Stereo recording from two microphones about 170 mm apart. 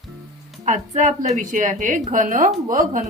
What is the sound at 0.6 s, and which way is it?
A woman's voice, 45° right (ahead or behind).